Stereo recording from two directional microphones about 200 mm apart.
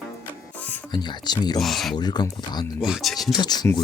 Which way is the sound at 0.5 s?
10° left (ahead or behind).